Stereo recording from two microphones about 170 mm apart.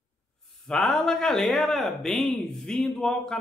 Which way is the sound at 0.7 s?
5° left (ahead or behind).